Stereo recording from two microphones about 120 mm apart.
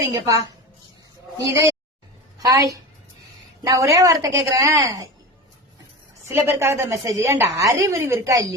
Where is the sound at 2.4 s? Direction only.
30° right (ahead or behind).